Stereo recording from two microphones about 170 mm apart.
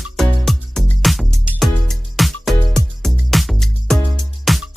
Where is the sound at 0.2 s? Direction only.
Centre (ahead or behind).